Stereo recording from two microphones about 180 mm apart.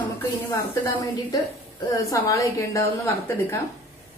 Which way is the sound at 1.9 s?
15° left (ahead or behind).